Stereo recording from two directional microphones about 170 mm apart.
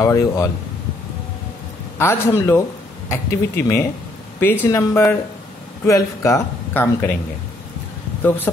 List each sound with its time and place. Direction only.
0.0 s speech: 20° left (ahead or behind)
2.0 s speech: 15° left (ahead or behind)